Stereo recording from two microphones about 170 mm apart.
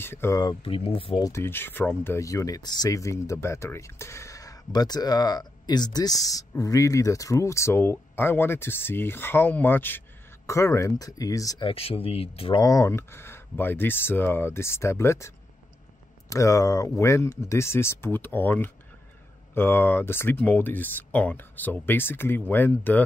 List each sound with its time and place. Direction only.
0.0 s speech: 15° left (ahead or behind)
0.6 s speech: 35° left (ahead or behind)
1.2 s speech: 15° left (ahead or behind)
11.7 s speech: 35° left (ahead or behind)
12.6 s speech: 20° left (ahead or behind)